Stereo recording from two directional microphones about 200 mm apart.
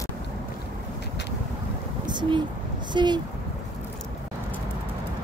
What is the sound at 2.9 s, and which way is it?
Speech, 20° right (ahead or behind).